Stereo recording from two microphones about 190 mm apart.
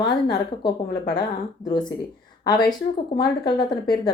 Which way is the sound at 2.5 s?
20° left (ahead or behind).